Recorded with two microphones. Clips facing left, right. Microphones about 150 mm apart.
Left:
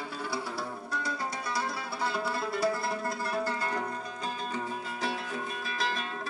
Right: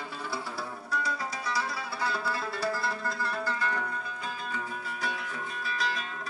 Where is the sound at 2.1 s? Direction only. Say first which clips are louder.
Left 1 dB; 20° left (ahead or behind).